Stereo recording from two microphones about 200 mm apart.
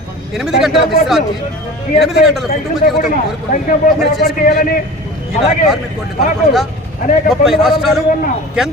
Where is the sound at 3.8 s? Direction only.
45° left (ahead or behind).